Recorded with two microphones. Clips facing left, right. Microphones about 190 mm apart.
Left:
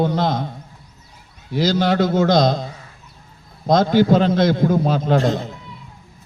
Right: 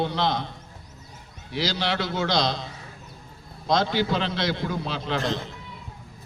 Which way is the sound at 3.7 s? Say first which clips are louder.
Left 9 dB; 45° left (ahead or behind).